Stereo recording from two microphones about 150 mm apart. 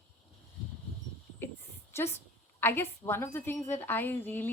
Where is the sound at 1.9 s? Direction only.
15° left (ahead or behind).